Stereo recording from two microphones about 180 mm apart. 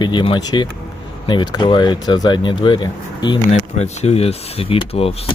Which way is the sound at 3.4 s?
35° left (ahead or behind).